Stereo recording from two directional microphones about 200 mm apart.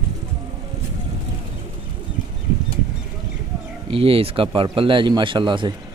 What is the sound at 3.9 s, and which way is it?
Speech, 30° right (ahead or behind).